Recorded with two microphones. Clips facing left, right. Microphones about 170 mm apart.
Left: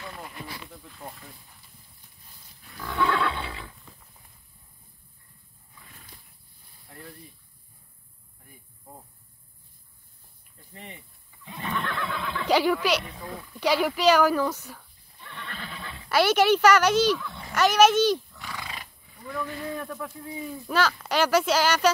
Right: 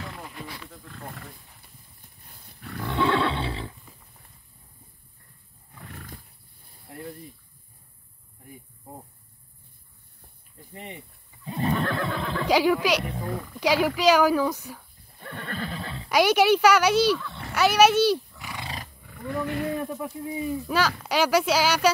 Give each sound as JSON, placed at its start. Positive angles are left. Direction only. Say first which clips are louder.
{"t": 0.8, "sound": "wild animals", "louder": "right 2 dB", "side_deg": -70}
{"t": 2.9, "sound": "neigh", "louder": "right 2 dB", "side_deg": -25}
{"t": 5.8, "sound": "horse", "louder": "right 10 dB", "side_deg": -65}
{"t": 10.7, "sound": "cricket", "louder": "right 4 dB", "side_deg": -20}
{"t": 11.4, "sound": "neigh", "louder": "right 6 dB", "side_deg": -35}
{"t": 12.4, "sound": "speech", "louder": "right 1 dB", "side_deg": -10}
{"t": 13.0, "sound": "a sound", "louder": "right 7 dB", "side_deg": -45}
{"t": 13.6, "sound": "speech", "louder": "right 1 dB", "side_deg": -10}
{"t": 15.1, "sound": "neigh", "louder": "right 7 dB", "side_deg": -45}
{"t": 16.1, "sound": "speech", "louder": "right 1 dB", "side_deg": -10}
{"t": 19.0, "sound": "roaring cats", "louder": "right 7 dB", "side_deg": -65}
{"t": 19.4, "sound": "speech", "louder": "right 7 dB", "side_deg": -70}
{"t": 20.1, "sound": "speech", "louder": "right 6 dB", "side_deg": -10}